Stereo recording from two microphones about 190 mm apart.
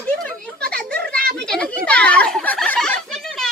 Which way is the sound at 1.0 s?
50° right (ahead or behind).